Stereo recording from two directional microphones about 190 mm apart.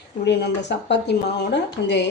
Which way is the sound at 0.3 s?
65° left (ahead or behind).